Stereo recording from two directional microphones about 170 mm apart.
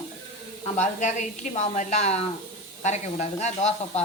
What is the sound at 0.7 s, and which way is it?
A woman's voice, 45° left (ahead or behind).